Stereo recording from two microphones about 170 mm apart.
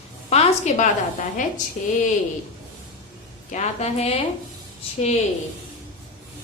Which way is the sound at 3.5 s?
40° left (ahead or behind).